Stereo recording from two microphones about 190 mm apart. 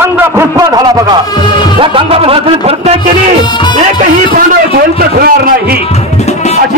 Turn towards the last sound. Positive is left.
turn(degrees=-50)  # may be behind; listen again after turning